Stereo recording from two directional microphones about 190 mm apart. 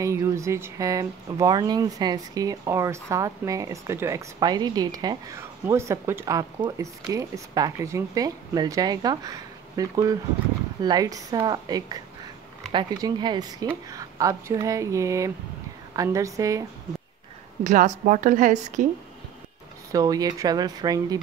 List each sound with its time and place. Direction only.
0.0 s speech: 15° right (ahead or behind)
17.6 s a woman's voice: 40° right (ahead or behind)
19.9 s speech: 20° right (ahead or behind)